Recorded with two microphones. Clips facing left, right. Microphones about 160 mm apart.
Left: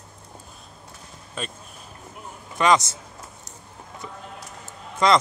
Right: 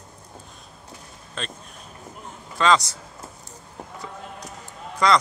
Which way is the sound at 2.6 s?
20° left (ahead or behind).